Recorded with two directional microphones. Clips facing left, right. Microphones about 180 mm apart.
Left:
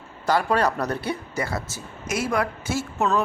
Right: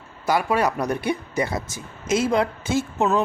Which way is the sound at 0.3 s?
10° right (ahead or behind).